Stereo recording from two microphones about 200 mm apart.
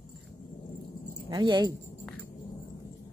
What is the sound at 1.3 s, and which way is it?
Speech, 20° right (ahead or behind).